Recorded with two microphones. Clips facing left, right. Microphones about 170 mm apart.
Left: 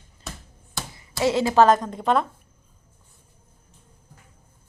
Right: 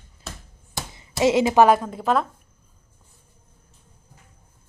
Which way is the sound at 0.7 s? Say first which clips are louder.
Right 3 dB; 20° right (ahead or behind).